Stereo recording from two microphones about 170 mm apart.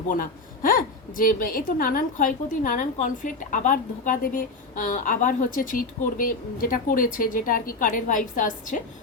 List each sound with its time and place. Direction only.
0.1 s a woman's voice: 55° left (ahead or behind)